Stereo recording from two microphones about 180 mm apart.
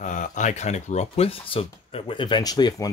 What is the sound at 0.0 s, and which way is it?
Speech, 45° left (ahead or behind).